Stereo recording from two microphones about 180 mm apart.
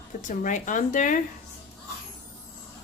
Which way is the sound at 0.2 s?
45° left (ahead or behind).